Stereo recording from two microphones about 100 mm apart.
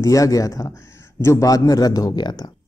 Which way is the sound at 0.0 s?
35° left (ahead or behind).